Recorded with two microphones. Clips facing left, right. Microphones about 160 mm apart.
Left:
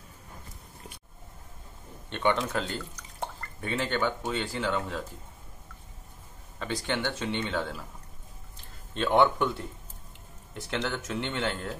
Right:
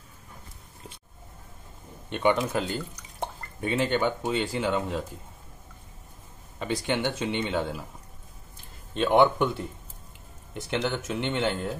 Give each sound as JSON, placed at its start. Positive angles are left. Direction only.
{"t": 2.0, "sound": "speech", "side_deg": -10}
{"t": 6.6, "sound": "speech", "side_deg": -15}
{"t": 8.9, "sound": "speech", "side_deg": -15}
{"t": 10.5, "sound": "speech", "side_deg": -15}